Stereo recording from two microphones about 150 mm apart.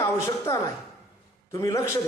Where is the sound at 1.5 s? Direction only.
20° left (ahead or behind).